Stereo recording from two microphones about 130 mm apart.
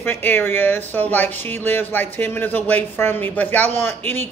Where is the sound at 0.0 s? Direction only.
15° left (ahead or behind).